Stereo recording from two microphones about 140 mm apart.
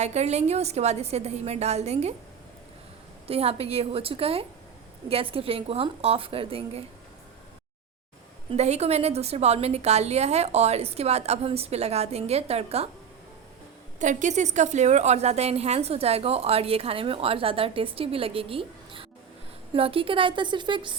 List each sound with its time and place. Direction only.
0.0 s a woman's voice: 55° right (ahead or behind)
3.2 s a woman's voice: 45° right (ahead or behind)
8.4 s a woman's voice: 50° right (ahead or behind)
14.0 s a woman's voice: 65° right (ahead or behind); by 21.0 s 35° right (ahead or behind)